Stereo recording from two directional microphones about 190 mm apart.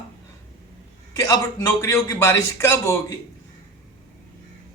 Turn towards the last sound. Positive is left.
turn(degrees=15)  # may be behind; listen again after turning